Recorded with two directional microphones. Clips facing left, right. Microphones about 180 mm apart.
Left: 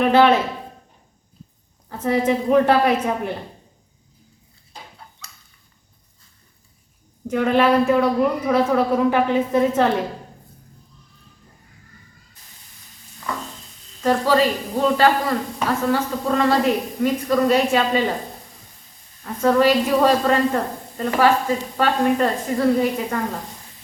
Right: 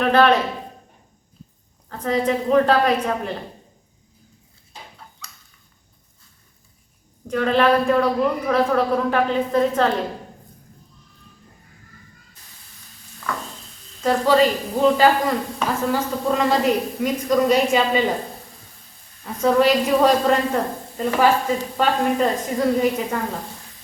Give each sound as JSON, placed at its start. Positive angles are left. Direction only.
{"t": 0.0, "sound": "a man's voice", "side_deg": 10}
{"t": 1.9, "sound": "a man's voice", "side_deg": 10}
{"t": 7.3, "sound": "a man's voice", "side_deg": 10}
{"t": 14.0, "sound": "a woman's voice", "side_deg": -10}
{"t": 19.2, "sound": "a woman's voice", "side_deg": -10}
{"t": 19.6, "sound": "a woman's voice", "side_deg": 0}